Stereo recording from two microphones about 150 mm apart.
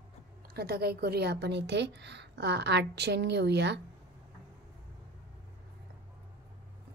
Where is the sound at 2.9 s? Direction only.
90° right.